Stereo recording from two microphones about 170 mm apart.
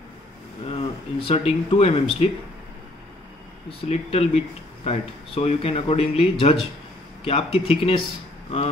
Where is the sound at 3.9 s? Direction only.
35° left (ahead or behind).